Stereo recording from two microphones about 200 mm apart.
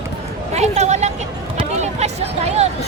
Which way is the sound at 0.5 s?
35° right (ahead or behind).